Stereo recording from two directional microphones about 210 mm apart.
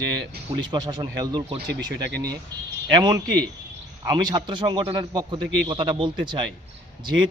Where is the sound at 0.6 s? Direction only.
20° right (ahead or behind).